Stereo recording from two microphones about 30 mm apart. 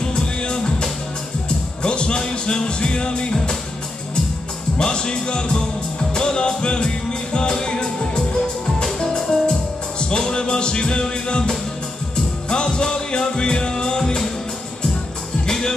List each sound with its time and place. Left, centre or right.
0.0 s music: left
4.7 s music: left
15.4 s music: left